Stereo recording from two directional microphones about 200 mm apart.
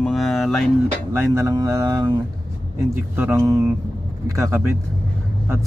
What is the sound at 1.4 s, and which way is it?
Speech, 15° right (ahead or behind).